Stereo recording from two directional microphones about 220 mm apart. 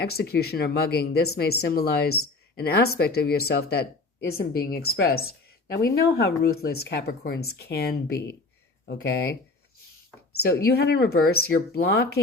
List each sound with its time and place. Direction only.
0.0 s speech: 45° left (ahead or behind)
10.7 s speech: 45° left (ahead or behind)